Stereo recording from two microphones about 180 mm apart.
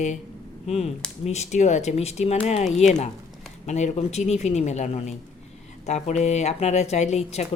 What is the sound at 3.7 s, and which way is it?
Speech, 40° left (ahead or behind).